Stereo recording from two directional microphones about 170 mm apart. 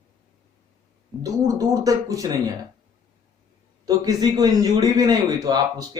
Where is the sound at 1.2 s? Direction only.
20° right (ahead or behind).